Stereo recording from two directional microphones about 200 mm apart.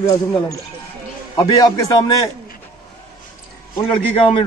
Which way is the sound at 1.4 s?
20° left (ahead or behind).